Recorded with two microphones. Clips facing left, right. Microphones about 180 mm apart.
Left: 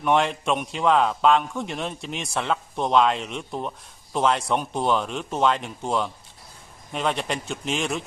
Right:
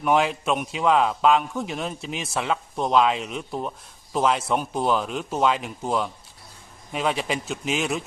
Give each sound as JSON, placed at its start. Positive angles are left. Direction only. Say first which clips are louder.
{"t": 0.0, "sound": "a man's voice", "louder": "even", "side_deg": -5}